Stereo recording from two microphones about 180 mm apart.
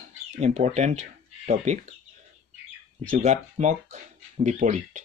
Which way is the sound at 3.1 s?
40° right (ahead or behind).